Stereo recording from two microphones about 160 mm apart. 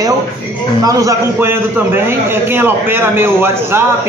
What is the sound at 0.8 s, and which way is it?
A man's voice, 20° right (ahead or behind).